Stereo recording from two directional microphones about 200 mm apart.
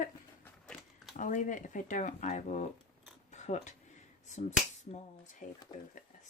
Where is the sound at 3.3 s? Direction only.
35° left (ahead or behind).